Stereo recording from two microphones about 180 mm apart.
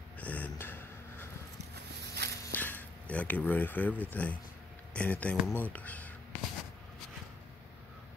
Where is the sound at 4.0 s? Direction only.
10° left (ahead or behind).